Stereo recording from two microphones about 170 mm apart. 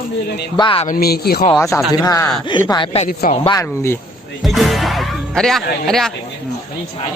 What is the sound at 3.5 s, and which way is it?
Speech, 15° left (ahead or behind).